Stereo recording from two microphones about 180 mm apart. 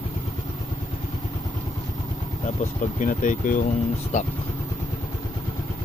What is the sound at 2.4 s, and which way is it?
Speech, 45° left (ahead or behind).